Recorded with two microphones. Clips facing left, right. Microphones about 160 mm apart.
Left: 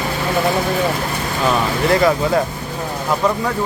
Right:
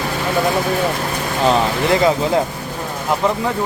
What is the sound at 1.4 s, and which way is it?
Speech, 20° right (ahead or behind).